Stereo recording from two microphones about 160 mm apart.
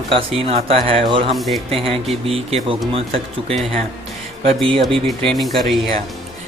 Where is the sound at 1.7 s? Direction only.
35° right (ahead or behind).